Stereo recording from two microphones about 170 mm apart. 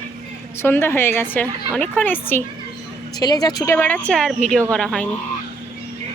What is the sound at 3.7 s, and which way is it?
Speech, 10° left (ahead or behind).